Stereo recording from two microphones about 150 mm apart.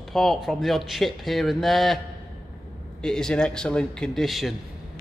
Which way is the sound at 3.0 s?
5° left (ahead or behind).